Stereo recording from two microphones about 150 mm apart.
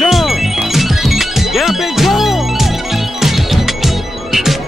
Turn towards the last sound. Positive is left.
turn(degrees=0)  # may be behind; listen again after turning